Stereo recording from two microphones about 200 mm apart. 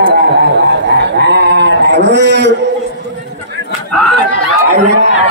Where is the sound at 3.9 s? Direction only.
5° left (ahead or behind).